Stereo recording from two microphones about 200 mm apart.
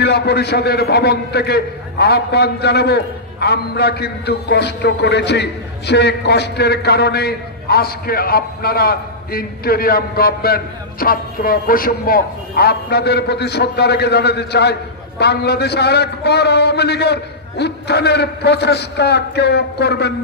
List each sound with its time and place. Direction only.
0.0 s a man's voice: 55° left (ahead or behind)